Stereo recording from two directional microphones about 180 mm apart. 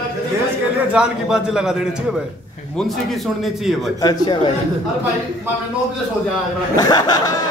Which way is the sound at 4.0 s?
20° left (ahead or behind).